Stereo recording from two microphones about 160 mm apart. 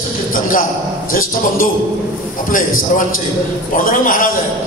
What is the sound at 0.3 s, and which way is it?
Speech, 60° left (ahead or behind).